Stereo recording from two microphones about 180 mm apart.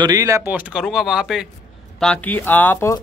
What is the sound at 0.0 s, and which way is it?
Speech, 20° right (ahead or behind).